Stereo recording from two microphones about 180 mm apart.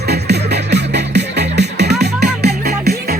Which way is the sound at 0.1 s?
65° right (ahead or behind).